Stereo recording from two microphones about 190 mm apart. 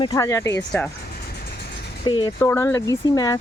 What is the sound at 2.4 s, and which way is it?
Speech, 10° left (ahead or behind).